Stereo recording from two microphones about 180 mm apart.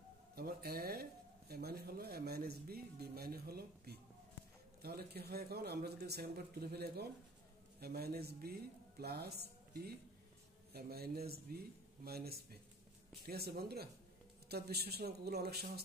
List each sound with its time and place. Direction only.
0.4 s a woman's voice: 60° right (ahead or behind)